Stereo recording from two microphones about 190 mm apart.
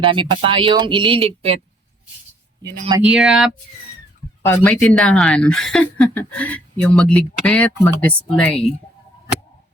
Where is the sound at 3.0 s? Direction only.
5° right (ahead or behind).